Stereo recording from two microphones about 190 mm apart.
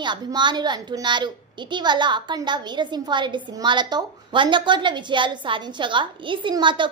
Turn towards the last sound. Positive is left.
turn(degrees=-25)  # may be behind; listen again after turning